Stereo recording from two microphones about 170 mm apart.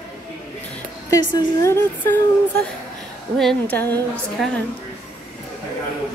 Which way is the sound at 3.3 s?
5° left (ahead or behind).